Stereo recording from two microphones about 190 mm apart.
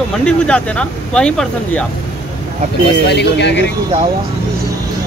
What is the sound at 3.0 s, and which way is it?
Speech, 65° left (ahead or behind).